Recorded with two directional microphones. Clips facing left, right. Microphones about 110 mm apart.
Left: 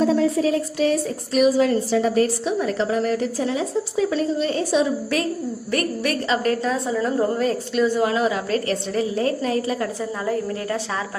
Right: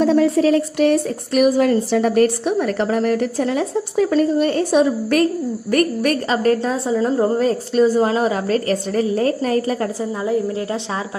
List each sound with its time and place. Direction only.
0.1 s a woman's voice: 70° right (ahead or behind); by 9.8 s 45° right (ahead or behind)